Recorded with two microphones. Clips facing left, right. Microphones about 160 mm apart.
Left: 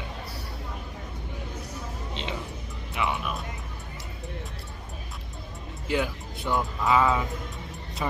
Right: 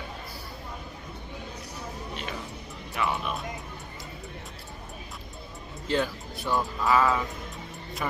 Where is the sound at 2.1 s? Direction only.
20° left (ahead or behind).